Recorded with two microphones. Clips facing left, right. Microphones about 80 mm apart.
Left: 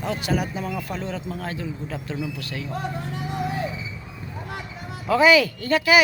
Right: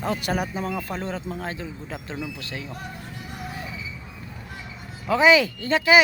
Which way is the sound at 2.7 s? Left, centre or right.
Left.